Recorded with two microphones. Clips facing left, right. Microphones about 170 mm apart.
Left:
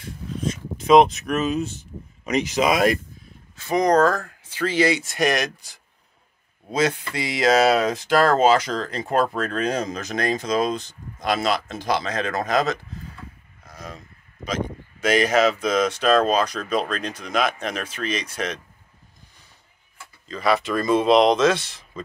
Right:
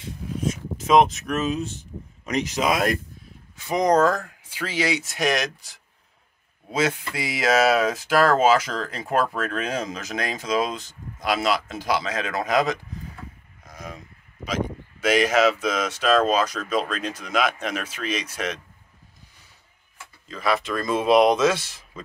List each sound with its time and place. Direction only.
0.4 s speech: 5° right (ahead or behind)
3.5 s speech: 15° right (ahead or behind)
20.2 s speech: centre (ahead or behind)